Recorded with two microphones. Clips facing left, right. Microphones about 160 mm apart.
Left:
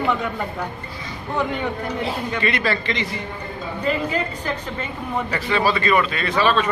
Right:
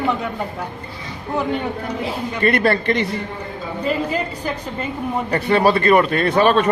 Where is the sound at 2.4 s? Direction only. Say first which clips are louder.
Right 8 dB; 55° right (ahead or behind).